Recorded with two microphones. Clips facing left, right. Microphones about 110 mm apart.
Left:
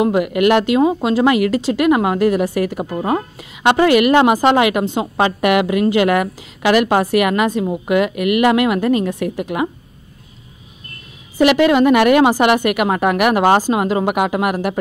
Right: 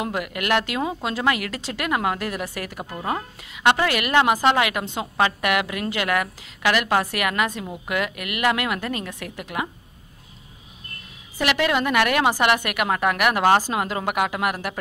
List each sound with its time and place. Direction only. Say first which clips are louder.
0.0 s a woman's voice: left 13 dB; 15° left (ahead or behind)
7.5 s a woman's voice: left 13 dB; 35° left (ahead or behind)
7.8 s a woman's voice: left 9 dB; 15° left (ahead or behind)
11.4 s a woman's voice: left 10 dB; 15° left (ahead or behind)